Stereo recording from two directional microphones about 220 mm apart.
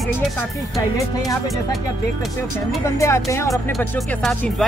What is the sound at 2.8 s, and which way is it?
Speech, 15° left (ahead or behind).